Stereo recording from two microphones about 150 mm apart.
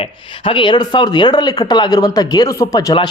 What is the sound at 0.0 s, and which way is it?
Speech, 35° left (ahead or behind).